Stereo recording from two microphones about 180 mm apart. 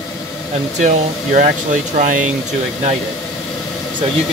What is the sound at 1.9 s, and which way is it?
Speech, 45° right (ahead or behind).